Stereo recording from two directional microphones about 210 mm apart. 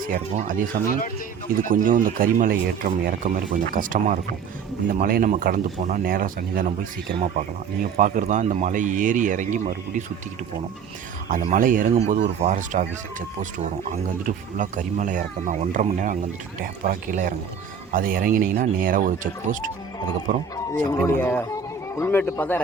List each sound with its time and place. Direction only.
0.0 s speech: 40° right (ahead or behind)
11.4 s speech: 40° right (ahead or behind)
20.7 s speech: 10° left (ahead or behind)